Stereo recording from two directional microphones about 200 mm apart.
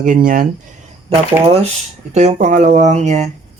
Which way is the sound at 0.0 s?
40° right (ahead or behind).